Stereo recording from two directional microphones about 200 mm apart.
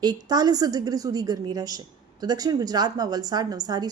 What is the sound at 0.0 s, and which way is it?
A woman's voice, 20° right (ahead or behind).